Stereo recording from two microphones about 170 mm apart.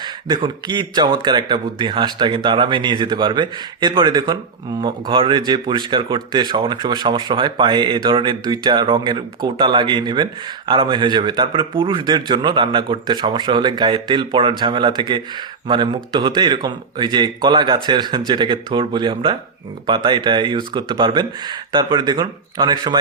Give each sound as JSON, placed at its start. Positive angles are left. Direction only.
{"t": 0.0, "sound": "speech", "side_deg": -25}